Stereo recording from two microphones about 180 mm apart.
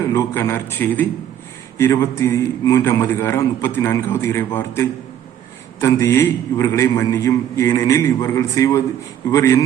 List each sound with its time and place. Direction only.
0.0 s a man's voice: 15° left (ahead or behind)